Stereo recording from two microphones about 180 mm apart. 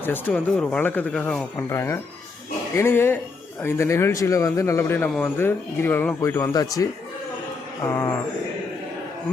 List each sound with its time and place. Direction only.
0.0 s a man's voice: 10° left (ahead or behind)
7.9 s a man's voice: 15° left (ahead or behind)